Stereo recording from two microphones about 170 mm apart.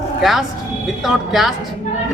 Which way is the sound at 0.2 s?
Centre (ahead or behind).